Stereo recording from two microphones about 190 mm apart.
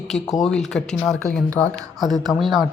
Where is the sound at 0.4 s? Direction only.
5° left (ahead or behind).